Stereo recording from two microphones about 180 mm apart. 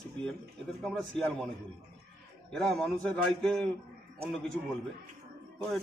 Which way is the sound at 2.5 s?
5° left (ahead or behind).